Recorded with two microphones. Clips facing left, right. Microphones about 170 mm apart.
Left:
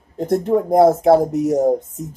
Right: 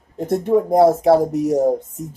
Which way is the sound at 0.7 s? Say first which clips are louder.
Left 2 dB; 20° left (ahead or behind).